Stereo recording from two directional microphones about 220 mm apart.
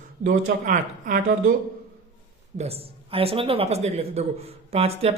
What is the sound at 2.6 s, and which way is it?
A woman's voice, 25° right (ahead or behind).